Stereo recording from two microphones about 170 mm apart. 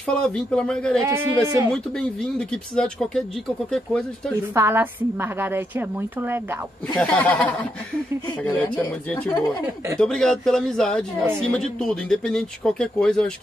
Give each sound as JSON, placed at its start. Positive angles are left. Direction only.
{"t": 0.0, "sound": "speech", "side_deg": 5}
{"t": 1.0, "sound": "a woman's voice", "side_deg": -15}
{"t": 1.7, "sound": "speech", "side_deg": 5}
{"t": 4.6, "sound": "a woman's voice", "side_deg": -15}
{"t": 7.0, "sound": "speech", "side_deg": 10}